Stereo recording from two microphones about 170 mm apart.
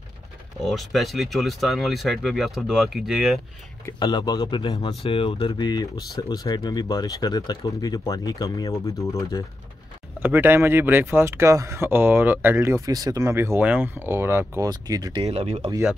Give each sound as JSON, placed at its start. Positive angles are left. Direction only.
{"t": 0.7, "sound": "speech", "side_deg": 0}
{"t": 4.0, "sound": "speech", "side_deg": 25}
{"t": 10.2, "sound": "speech", "side_deg": -10}
{"t": 15.2, "sound": "speech", "side_deg": -40}